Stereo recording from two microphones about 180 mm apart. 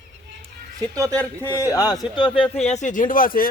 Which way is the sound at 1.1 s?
10° left (ahead or behind).